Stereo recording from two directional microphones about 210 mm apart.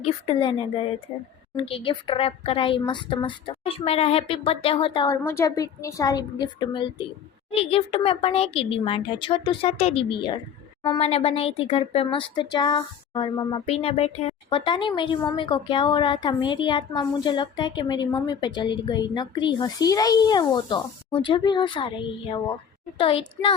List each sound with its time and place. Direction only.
0.0 s speech: 25° left (ahead or behind)
5.1 s a woman's voice: 10° left (ahead or behind)